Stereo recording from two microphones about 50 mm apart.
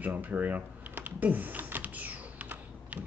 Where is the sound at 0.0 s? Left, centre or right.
Right.